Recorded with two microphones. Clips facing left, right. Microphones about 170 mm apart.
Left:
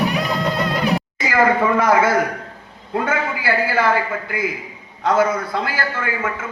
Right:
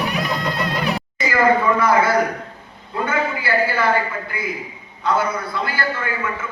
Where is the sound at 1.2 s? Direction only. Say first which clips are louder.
Even; 90° left.